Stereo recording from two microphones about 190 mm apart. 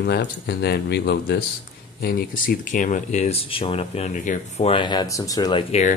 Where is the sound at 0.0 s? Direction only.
60° left (ahead or behind); by 5.9 s 35° left (ahead or behind).